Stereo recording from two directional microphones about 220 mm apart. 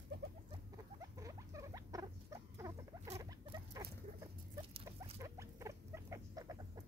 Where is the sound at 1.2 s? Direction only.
15° right (ahead or behind).